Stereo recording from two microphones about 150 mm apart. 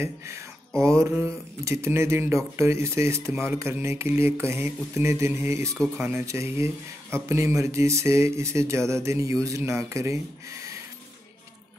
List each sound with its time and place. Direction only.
0.0 s speech: 20° right (ahead or behind)